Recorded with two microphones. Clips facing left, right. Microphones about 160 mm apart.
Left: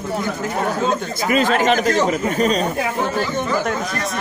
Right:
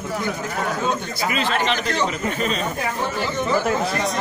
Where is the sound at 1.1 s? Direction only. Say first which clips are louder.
Left 5 dB; 45° left (ahead or behind).